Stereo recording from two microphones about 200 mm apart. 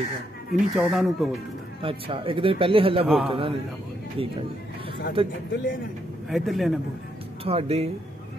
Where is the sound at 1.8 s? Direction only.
25° right (ahead or behind).